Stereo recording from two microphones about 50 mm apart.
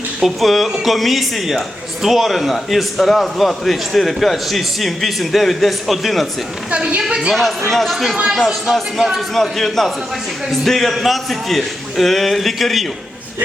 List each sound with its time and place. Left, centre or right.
0.2 s speech: centre
6.7 s a woman's voice: right
7.7 s speech: centre
8.1 s speech: centre
9.3 s a man's voice: centre